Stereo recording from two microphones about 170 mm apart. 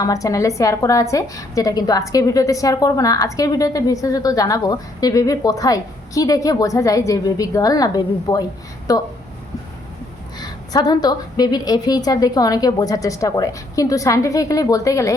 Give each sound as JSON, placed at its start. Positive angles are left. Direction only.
{"t": 0.0, "sound": "a woman's voice", "side_deg": 20}
{"t": 10.4, "sound": "a woman's voice", "side_deg": 25}